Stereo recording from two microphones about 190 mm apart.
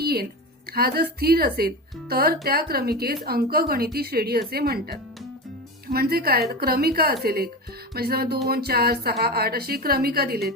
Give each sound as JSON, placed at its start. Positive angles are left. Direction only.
{"t": 0.0, "sound": "a woman's voice", "side_deg": -55}